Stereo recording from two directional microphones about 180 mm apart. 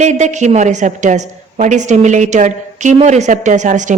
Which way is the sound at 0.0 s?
40° right (ahead or behind).